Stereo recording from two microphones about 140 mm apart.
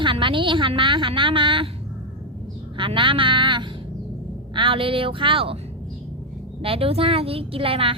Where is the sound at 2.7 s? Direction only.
35° right (ahead or behind).